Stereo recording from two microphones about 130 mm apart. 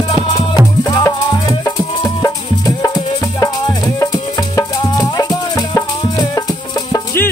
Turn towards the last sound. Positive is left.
turn(degrees=25)  # may be behind; listen again after turning